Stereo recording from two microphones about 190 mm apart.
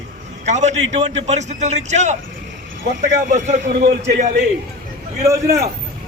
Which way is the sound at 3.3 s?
40° right (ahead or behind).